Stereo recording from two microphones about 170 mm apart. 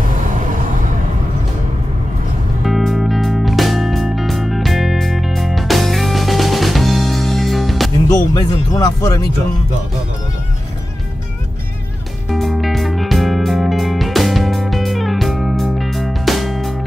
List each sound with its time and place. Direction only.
0.3 s vehicle: 50° right (ahead or behind)
2.6 s music: centre (ahead or behind)
8.1 s speech: 20° left (ahead or behind)
12.3 s music: centre (ahead or behind)